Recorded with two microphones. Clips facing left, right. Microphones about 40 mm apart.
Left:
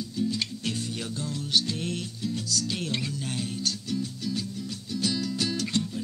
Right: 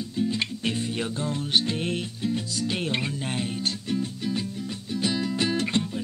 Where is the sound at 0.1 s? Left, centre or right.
Right.